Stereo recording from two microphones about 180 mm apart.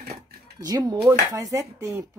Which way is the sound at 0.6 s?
20° right (ahead or behind).